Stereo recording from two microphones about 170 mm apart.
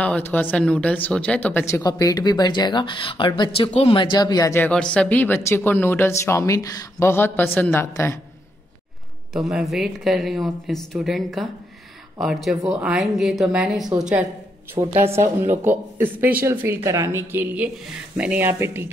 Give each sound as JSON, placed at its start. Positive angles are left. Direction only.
{"t": 0.0, "sound": "speech", "side_deg": 10}
{"t": 9.3, "sound": "a woman's voice", "side_deg": 0}
{"t": 14.8, "sound": "speech", "side_deg": -30}
{"t": 15.6, "sound": "a woman's voice", "side_deg": -10}